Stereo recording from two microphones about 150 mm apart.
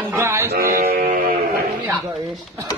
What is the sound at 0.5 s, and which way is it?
Music, 80° right.